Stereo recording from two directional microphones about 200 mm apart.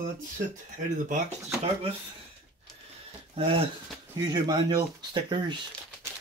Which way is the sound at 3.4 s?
30° right (ahead or behind).